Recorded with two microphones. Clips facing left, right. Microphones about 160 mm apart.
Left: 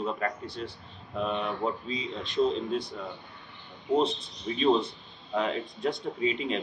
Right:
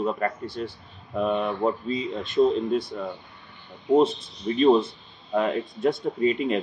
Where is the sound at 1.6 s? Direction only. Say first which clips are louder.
Right 6 dB; 50° right (ahead or behind).